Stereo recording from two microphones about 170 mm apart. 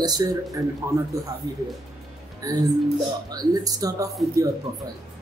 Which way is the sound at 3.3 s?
20° right (ahead or behind).